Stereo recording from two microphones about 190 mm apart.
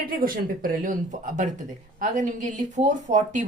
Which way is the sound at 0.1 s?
45° right (ahead or behind).